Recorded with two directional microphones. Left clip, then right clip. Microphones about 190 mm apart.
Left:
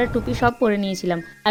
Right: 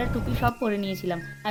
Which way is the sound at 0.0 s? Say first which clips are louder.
Left 7 dB; 35° left (ahead or behind).